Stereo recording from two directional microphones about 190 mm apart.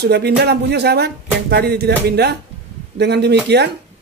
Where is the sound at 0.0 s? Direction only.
60° right (ahead or behind).